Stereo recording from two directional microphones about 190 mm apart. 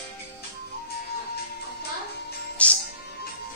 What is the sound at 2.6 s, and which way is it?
Music, 5° left (ahead or behind).